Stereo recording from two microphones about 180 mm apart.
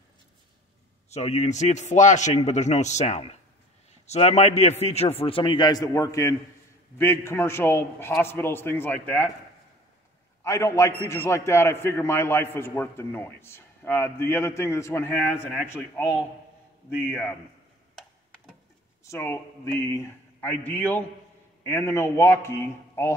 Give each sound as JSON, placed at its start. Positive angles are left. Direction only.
{"t": 1.1, "sound": "a man's voice", "side_deg": 40}
{"t": 10.4, "sound": "a man's voice", "side_deg": 15}
{"t": 15.3, "sound": "a man's voice", "side_deg": -5}
{"t": 15.7, "sound": "a man's voice", "side_deg": 15}
{"t": 19.0, "sound": "a man's voice", "side_deg": 15}